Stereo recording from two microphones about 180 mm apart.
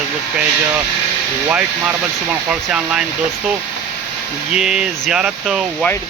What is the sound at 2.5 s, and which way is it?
Speech, 5° right (ahead or behind).